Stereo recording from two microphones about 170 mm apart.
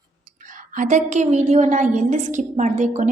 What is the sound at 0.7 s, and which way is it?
A woman's voice, 50° right (ahead or behind).